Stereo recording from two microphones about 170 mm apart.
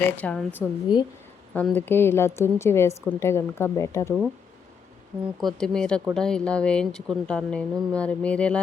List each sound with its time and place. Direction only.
0.2 s a woman's voice: 10° left (ahead or behind)
0.9 s a woman's voice: 25° left (ahead or behind)
1.5 s a woman's voice: 10° left (ahead or behind)
5.2 s a woman's voice: centre (ahead or behind)